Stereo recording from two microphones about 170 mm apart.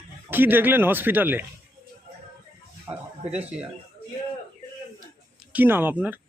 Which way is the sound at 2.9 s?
20° right (ahead or behind).